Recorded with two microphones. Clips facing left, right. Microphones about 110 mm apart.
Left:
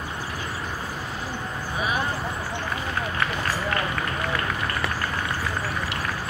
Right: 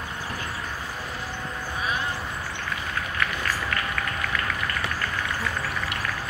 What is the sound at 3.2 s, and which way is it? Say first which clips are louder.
Run: even; 30° left (ahead or behind).